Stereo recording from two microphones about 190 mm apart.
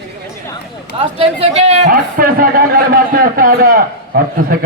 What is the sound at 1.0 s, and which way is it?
A man's voice, 30° right (ahead or behind).